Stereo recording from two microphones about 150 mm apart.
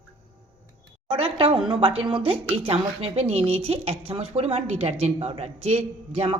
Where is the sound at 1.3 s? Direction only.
35° right (ahead or behind).